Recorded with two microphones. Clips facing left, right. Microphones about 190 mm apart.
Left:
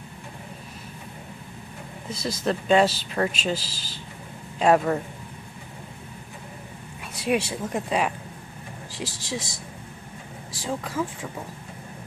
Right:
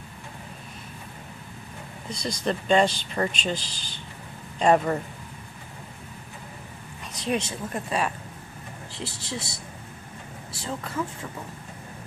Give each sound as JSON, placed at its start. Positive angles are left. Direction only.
{"t": 2.0, "sound": "speech", "side_deg": 5}
{"t": 7.2, "sound": "speech", "side_deg": 10}
{"t": 9.0, "sound": "speech", "side_deg": 90}
{"t": 10.7, "sound": "speech", "side_deg": 10}